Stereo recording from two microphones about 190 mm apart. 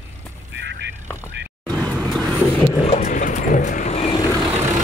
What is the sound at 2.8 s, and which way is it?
Vehicle, 40° left (ahead or behind).